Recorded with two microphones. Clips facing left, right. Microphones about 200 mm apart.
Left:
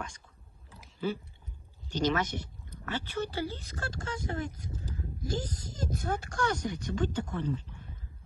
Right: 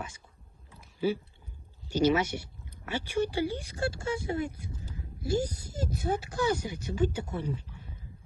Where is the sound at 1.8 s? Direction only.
10° right (ahead or behind).